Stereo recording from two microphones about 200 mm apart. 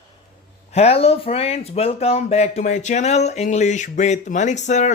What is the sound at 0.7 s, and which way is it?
Speech, 30° left (ahead or behind).